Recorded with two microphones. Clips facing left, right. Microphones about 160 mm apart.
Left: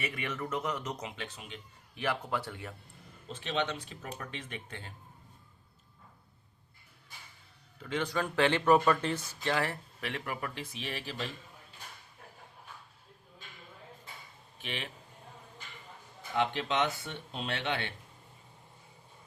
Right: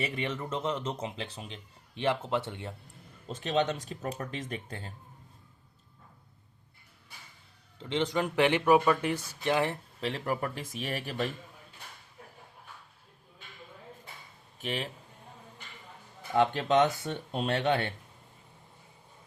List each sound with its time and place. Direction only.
0.0 s speech: 30° right (ahead or behind)
3.2 s speech: 40° right (ahead or behind)
7.8 s speech: 25° right (ahead or behind); by 11.3 s 50° right (ahead or behind)
14.6 s a man's voice: 40° right (ahead or behind)
16.3 s speech: 45° right (ahead or behind)